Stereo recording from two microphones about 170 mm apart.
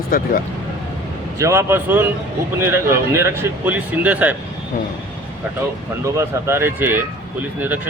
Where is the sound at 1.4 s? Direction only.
15° right (ahead or behind).